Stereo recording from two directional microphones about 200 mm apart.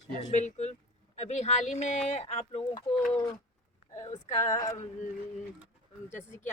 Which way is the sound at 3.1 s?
15° left (ahead or behind).